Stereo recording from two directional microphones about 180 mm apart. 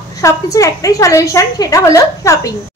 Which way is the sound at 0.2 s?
15° left (ahead or behind).